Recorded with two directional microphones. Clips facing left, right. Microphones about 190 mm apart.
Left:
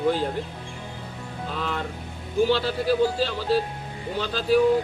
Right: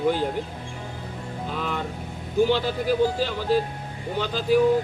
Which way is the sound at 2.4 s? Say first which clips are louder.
Even; 15° right (ahead or behind).